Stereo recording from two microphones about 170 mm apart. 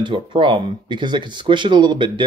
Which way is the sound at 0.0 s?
30° right (ahead or behind).